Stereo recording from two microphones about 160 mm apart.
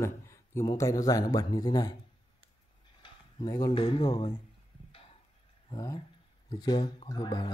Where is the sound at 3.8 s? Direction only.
35° left (ahead or behind).